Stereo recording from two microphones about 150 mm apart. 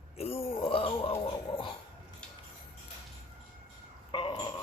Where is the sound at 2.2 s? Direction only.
5° left (ahead or behind).